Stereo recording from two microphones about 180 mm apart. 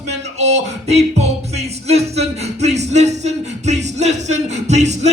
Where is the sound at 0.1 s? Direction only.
40° right (ahead or behind).